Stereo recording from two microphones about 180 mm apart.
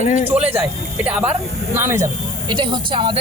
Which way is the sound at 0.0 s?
45° left (ahead or behind).